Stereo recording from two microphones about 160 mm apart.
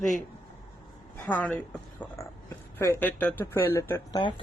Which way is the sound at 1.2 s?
10° left (ahead or behind).